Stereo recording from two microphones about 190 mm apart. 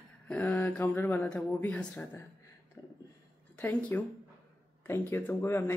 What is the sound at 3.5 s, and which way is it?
Speech, 10° left (ahead or behind).